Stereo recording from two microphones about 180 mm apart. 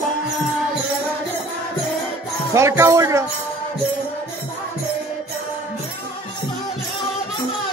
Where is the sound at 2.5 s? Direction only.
15° right (ahead or behind).